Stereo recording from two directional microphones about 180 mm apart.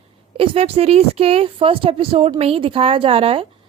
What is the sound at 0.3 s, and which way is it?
A woman's voice, 30° right (ahead or behind).